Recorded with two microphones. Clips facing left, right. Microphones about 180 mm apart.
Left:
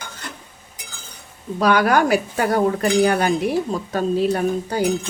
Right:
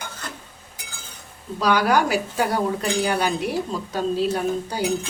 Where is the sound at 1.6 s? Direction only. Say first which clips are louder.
Left 3 dB; 55° left (ahead or behind).